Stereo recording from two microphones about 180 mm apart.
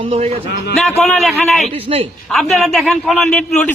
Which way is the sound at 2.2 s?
Centre (ahead or behind).